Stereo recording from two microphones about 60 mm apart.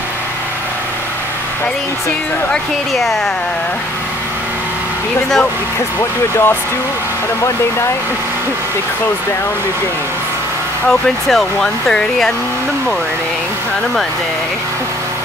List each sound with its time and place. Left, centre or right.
2.9 s speech: centre
5.9 s speech: left
10.9 s speech: centre